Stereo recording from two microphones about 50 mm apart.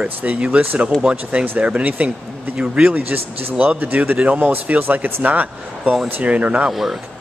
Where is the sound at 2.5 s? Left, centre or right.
Centre.